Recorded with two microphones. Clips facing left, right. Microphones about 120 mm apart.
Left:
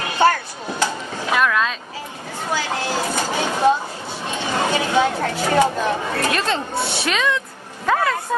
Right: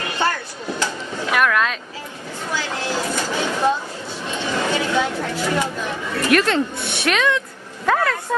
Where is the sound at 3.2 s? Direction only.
45° left (ahead or behind).